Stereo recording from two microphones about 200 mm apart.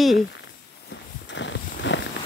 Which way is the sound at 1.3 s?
65° left (ahead or behind).